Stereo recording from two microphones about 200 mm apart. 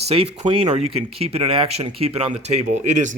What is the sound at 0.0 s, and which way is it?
Speech, 30° right (ahead or behind).